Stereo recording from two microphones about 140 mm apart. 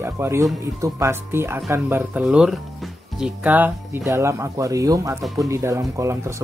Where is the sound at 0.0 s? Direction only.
20° right (ahead or behind).